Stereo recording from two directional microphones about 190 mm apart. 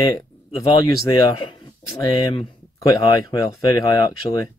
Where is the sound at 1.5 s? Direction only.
20° left (ahead or behind).